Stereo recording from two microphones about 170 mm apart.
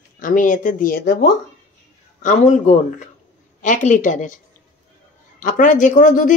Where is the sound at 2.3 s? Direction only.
45° left (ahead or behind).